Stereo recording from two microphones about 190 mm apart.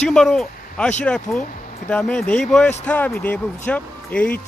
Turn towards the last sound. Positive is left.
turn(degrees=5)  # may be behind; listen again after turning